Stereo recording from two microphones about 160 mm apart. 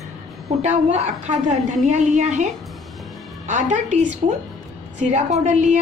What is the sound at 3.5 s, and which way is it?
A woman's voice, 50° right (ahead or behind).